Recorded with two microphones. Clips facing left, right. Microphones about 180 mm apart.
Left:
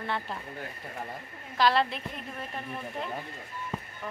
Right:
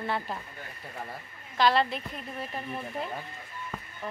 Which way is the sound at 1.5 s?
Centre (ahead or behind).